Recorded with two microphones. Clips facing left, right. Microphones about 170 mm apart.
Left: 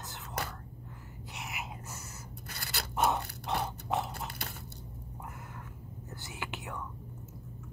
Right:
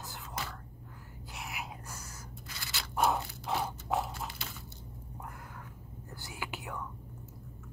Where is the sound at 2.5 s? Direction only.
60° left (ahead or behind).